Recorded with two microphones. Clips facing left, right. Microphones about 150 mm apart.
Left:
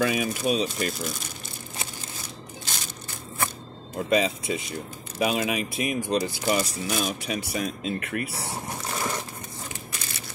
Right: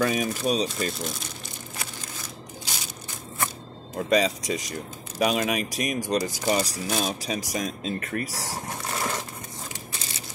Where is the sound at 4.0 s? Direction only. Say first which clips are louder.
Right 1 dB; 40° right (ahead or behind).